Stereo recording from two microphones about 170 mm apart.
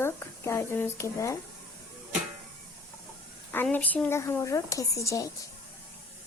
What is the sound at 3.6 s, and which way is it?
A woman's voice, 10° left (ahead or behind).